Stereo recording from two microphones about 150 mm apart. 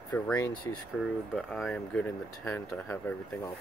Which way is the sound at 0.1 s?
10° left (ahead or behind).